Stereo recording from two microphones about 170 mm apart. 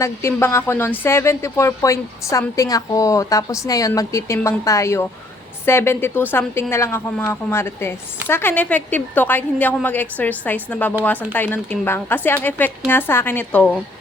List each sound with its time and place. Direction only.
0.0 s a woman's voice: 15° left (ahead or behind)